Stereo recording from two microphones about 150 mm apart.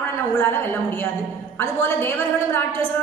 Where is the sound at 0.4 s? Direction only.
15° left (ahead or behind).